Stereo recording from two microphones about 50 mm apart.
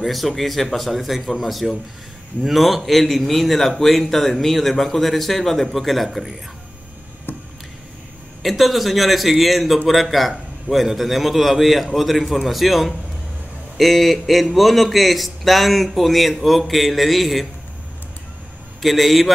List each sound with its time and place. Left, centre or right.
0.0 s speech: centre
7.3 s a sound: left
8.4 s speech: centre
18.8 s speech: centre